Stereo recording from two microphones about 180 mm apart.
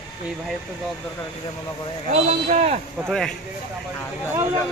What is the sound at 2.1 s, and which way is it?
Speech, 40° right (ahead or behind).